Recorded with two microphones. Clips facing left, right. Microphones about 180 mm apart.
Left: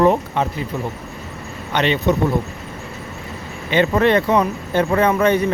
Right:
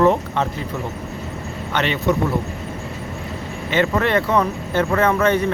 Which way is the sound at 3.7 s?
20° left (ahead or behind).